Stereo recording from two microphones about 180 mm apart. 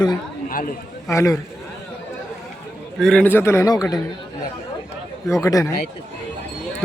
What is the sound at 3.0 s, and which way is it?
Speech, 5° left (ahead or behind).